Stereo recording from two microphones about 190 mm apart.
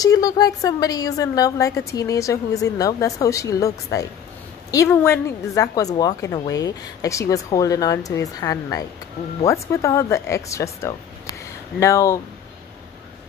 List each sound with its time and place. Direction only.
0.0 s a woman's voice: 20° left (ahead or behind)